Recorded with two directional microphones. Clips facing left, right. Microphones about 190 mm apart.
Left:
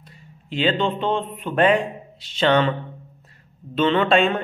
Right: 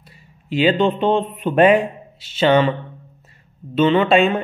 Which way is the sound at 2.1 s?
5° right (ahead or behind).